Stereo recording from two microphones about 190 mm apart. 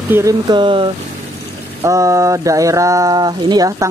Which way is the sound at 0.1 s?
20° right (ahead or behind).